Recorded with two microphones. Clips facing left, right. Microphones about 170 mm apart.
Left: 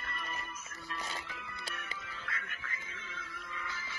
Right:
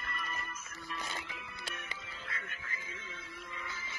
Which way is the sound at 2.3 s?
25° right (ahead or behind).